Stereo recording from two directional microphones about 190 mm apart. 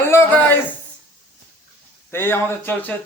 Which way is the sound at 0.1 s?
15° left (ahead or behind).